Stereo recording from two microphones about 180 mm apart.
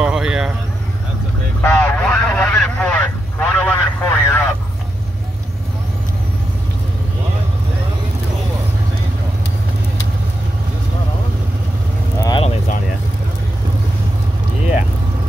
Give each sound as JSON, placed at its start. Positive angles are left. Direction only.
{"t": 0.0, "sound": "vehicle", "side_deg": -5}
{"t": 1.6, "sound": "vehicle", "side_deg": 10}
{"t": 12.2, "sound": "vehicle", "side_deg": 20}